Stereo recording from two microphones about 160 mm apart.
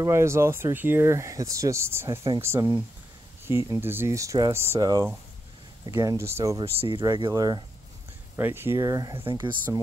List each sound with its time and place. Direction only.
0.0 s speech: 15° right (ahead or behind)
6.6 s speech: 35° right (ahead or behind)
7.0 s speech: 25° right (ahead or behind)
8.4 s speech: 15° right (ahead or behind)